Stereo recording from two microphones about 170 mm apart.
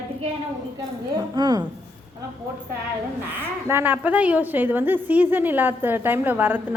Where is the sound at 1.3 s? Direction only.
25° right (ahead or behind).